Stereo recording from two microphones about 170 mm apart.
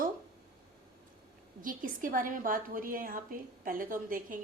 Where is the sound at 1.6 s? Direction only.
55° right (ahead or behind).